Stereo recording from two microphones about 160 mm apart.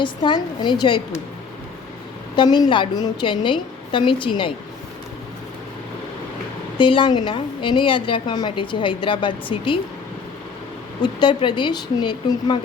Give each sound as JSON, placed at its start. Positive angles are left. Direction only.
{"t": 0.0, "sound": "speech", "side_deg": 30}
{"t": 2.3, "sound": "a woman's voice", "side_deg": 25}
{"t": 6.7, "sound": "a woman's voice", "side_deg": 30}
{"t": 11.0, "sound": "speech", "side_deg": 30}